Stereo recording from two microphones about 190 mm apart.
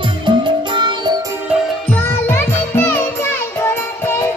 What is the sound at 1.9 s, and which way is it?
Music, 10° left (ahead or behind).